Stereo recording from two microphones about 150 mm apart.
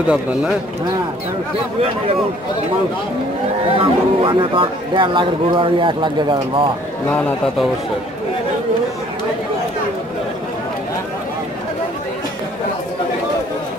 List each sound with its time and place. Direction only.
0.0 s speech: 5° right (ahead or behind)
3.7 s speech: 35° right (ahead or behind)
7.1 s a man's voice: 15° left (ahead or behind)